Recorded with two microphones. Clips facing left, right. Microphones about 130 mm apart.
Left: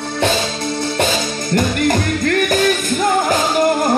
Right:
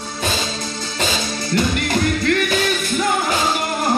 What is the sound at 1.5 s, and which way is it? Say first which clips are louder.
Music: left 4 dB; 45° left (ahead or behind).